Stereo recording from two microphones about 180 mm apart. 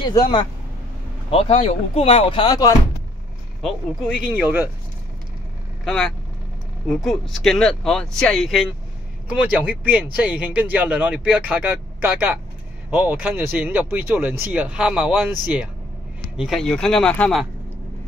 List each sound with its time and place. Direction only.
1.3 s speech: 35° left (ahead or behind)
3.6 s speech: 5° right (ahead or behind)
5.9 s speech: 5° left (ahead or behind)